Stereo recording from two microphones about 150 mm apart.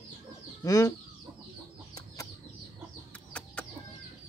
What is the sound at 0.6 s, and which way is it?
Speech, 25° left (ahead or behind).